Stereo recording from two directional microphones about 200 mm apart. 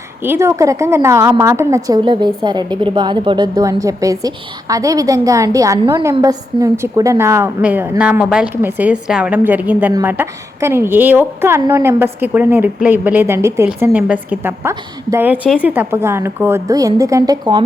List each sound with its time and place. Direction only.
0.2 s a woman's voice: 10° right (ahead or behind)